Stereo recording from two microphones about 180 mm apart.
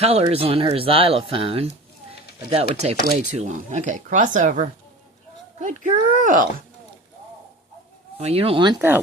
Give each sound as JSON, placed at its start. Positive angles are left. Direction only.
{"t": 0.0, "sound": "speech", "side_deg": -35}
{"t": 8.2, "sound": "speech", "side_deg": -35}